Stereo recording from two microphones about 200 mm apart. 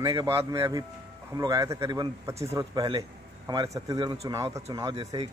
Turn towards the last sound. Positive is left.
turn(degrees=-20)  # may be behind; listen again after turning